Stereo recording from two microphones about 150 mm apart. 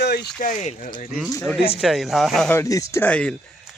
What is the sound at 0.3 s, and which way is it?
Speech, 60° left (ahead or behind).